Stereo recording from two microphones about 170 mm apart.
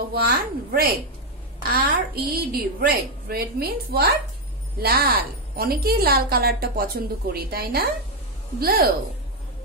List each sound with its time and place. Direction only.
0.1 s a woman's voice: 65° right (ahead or behind)